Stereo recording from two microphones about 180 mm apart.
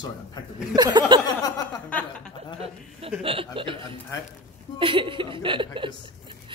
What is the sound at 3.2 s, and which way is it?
Speech, 30° right (ahead or behind).